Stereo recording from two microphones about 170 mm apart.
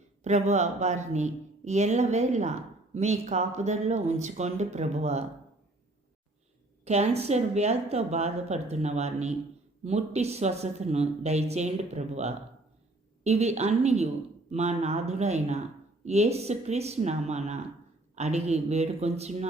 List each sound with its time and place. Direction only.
0.2 s speech: 40° right (ahead or behind)
6.8 s speech: 40° right (ahead or behind)